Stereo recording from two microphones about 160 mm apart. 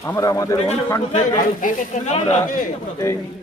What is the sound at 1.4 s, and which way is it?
Speech, 55° left (ahead or behind).